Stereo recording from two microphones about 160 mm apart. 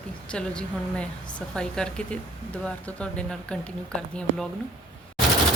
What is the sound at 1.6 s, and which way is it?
Speech, 5° left (ahead or behind).